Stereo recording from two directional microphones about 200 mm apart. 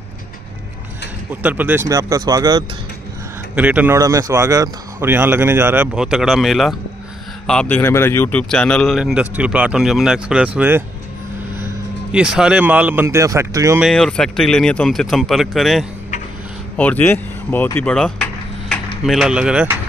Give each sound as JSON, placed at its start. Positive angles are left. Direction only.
{"t": 1.3, "sound": "a man's voice", "side_deg": -10}
{"t": 3.5, "sound": "a man's voice", "side_deg": -10}
{"t": 13.8, "sound": "speech", "side_deg": 5}